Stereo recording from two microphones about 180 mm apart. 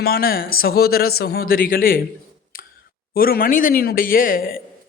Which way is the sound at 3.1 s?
55° left (ahead or behind).